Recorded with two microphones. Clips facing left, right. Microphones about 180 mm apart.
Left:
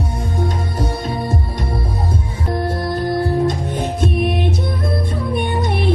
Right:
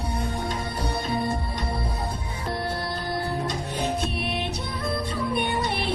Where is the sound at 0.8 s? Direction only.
45° left (ahead or behind).